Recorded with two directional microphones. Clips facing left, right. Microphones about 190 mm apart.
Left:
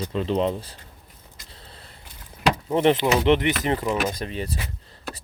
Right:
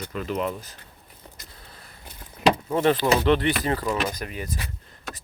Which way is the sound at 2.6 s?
20° left (ahead or behind).